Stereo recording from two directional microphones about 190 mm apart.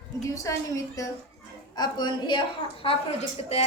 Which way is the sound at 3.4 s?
30° left (ahead or behind).